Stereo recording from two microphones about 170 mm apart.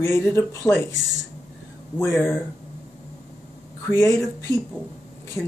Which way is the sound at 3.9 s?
15° left (ahead or behind).